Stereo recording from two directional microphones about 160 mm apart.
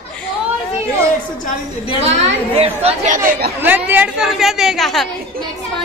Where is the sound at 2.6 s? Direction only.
50° right (ahead or behind).